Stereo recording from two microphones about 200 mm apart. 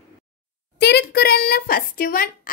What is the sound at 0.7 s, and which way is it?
A child's voice, 55° left (ahead or behind).